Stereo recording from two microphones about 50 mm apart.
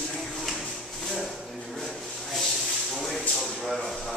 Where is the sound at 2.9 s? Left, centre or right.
Centre.